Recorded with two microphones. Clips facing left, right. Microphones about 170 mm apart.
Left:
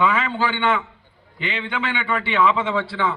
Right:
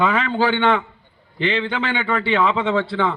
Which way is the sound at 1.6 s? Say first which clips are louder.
Right 3 dB; 35° right (ahead or behind).